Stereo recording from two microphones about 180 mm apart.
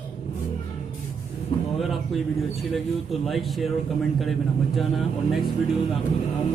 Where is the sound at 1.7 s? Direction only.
Centre (ahead or behind).